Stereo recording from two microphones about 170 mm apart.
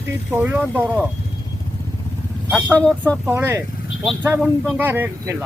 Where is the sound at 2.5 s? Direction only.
5° right (ahead or behind).